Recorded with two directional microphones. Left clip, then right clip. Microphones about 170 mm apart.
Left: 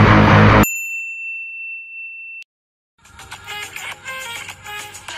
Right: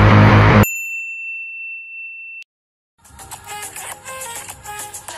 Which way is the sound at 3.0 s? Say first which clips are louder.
Left 2 dB; 40° right (ahead or behind).